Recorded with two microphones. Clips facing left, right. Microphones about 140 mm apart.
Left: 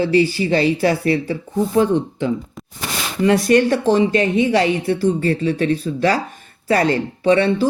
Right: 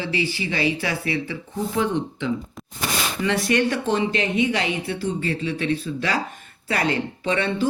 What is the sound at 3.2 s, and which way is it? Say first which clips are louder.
Speech: left 8 dB; 40° left (ahead or behind).